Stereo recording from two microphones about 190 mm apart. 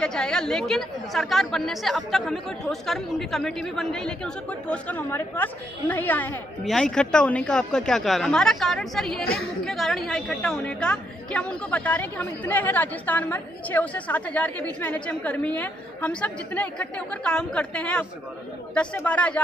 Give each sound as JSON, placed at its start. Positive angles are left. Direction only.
{"t": 0.0, "sound": "speech", "side_deg": 5}
{"t": 9.2, "sound": "a woman's voice", "side_deg": 55}
{"t": 9.7, "sound": "a woman's voice", "side_deg": 0}